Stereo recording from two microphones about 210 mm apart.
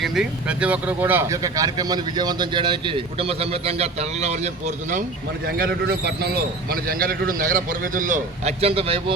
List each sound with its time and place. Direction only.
0.0 s speech: centre (ahead or behind); by 5.0 s 35° right (ahead or behind)
5.5 s a man's voice: 45° right (ahead or behind); by 9.1 s 25° right (ahead or behind)